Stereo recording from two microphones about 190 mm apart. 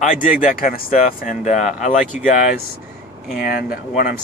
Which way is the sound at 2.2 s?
40° left (ahead or behind).